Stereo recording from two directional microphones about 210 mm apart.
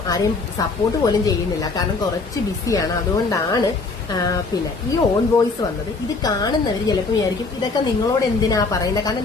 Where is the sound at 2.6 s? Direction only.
15° left (ahead or behind).